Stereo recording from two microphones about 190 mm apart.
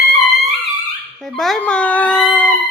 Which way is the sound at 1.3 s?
Centre (ahead or behind).